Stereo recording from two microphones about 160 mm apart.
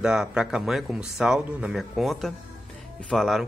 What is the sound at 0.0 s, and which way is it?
A man's voice, 5° right (ahead or behind).